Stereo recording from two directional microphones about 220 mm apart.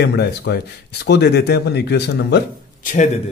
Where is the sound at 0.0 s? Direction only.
50° left (ahead or behind).